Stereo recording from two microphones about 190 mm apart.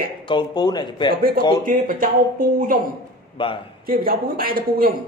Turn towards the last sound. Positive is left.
turn(degrees=-50)  # may be behind; listen again after turning